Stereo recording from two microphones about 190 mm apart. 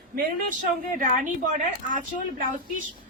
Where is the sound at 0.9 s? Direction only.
45° right (ahead or behind).